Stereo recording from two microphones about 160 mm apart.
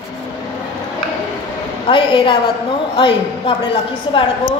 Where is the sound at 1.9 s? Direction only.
30° left (ahead or behind).